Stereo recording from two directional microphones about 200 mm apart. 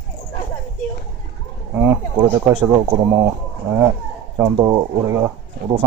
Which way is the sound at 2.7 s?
20° right (ahead or behind).